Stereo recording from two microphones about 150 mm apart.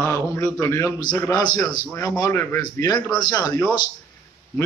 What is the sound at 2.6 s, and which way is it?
A man's voice, 25° left (ahead or behind).